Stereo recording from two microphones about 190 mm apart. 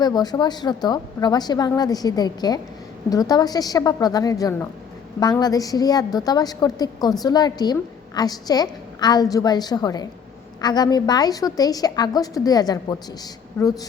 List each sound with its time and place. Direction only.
0.0 s a woman's voice: 20° left (ahead or behind)